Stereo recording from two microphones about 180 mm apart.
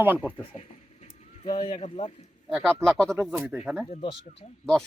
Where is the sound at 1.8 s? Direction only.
35° left (ahead or behind).